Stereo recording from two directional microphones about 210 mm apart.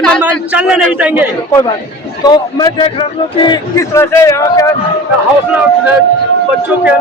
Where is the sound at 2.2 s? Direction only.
20° left (ahead or behind).